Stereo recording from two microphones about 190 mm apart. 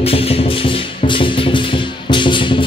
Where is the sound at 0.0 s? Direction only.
30° left (ahead or behind).